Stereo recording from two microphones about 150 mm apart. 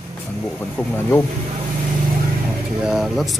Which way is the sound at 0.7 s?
15° left (ahead or behind).